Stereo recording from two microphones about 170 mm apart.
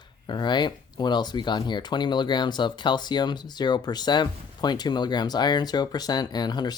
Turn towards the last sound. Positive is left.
turn(degrees=25)  # may be behind; listen again after turning